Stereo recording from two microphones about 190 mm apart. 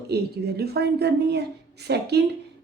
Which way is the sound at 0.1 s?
55° right (ahead or behind).